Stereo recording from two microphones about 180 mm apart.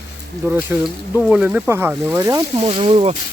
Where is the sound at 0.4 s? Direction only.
10° right (ahead or behind).